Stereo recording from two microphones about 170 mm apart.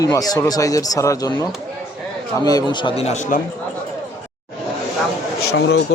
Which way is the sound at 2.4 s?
25° left (ahead or behind).